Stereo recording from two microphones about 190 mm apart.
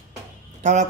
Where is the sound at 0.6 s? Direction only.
40° right (ahead or behind).